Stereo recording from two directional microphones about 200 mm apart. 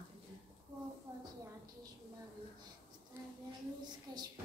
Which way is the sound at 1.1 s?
15° right (ahead or behind).